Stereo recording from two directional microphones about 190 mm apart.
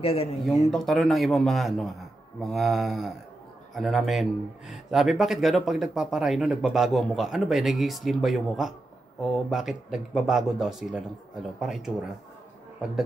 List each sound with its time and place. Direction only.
0.0 s speech: 30° left (ahead or behind)
0.7 s speech: centre (ahead or behind)